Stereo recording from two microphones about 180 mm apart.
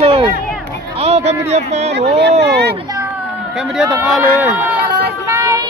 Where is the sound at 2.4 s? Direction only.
70° right (ahead or behind).